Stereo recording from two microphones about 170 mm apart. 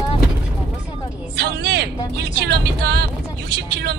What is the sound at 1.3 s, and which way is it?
Speech, 75° right (ahead or behind).